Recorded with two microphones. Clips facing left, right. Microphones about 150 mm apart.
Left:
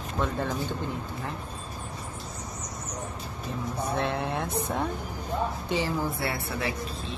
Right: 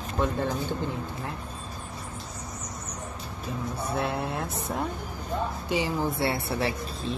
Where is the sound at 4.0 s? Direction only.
5° right (ahead or behind).